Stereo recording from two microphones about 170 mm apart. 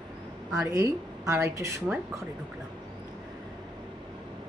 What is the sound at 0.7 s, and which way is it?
Speech, 20° right (ahead or behind).